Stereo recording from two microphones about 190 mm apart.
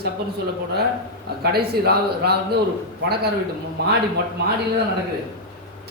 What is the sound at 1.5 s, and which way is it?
Speech, 55° right (ahead or behind).